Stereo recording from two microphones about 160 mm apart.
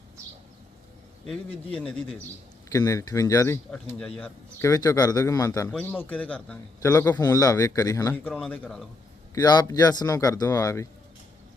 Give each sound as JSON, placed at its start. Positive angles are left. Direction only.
{"t": 1.3, "sound": "speech", "side_deg": 5}
{"t": 2.7, "sound": "speech", "side_deg": 20}
{"t": 3.7, "sound": "a man's voice", "side_deg": 5}
{"t": 4.6, "sound": "a man's voice", "side_deg": 20}
{"t": 9.3, "sound": "speech", "side_deg": 25}